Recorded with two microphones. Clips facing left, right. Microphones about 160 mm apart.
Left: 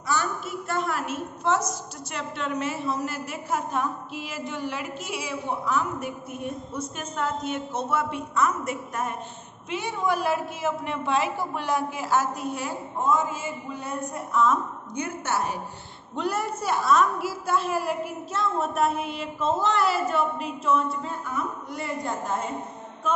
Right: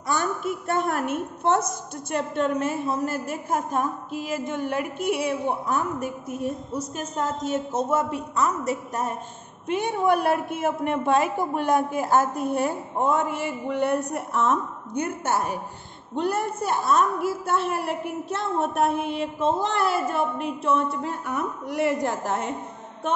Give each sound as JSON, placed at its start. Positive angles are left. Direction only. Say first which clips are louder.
{"t": 0.0, "sound": "a woman's voice", "louder": "right 2 dB", "side_deg": -50}
{"t": 9.7, "sound": "a woman's voice", "louder": "right 5 dB", "side_deg": -55}
{"t": 19.9, "sound": "a woman's voice", "louder": "even", "side_deg": -55}